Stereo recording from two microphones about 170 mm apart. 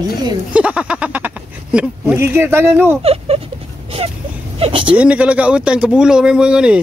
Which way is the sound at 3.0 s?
35° right (ahead or behind).